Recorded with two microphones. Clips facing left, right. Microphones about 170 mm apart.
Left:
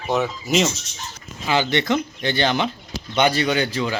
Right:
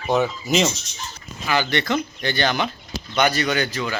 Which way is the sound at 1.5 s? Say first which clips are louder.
Left 2 dB; 25° left (ahead or behind).